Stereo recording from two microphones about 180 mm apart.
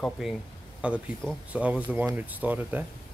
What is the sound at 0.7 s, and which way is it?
Speech, 5° right (ahead or behind).